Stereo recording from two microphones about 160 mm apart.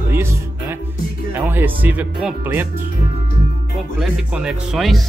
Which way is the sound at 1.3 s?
15° right (ahead or behind).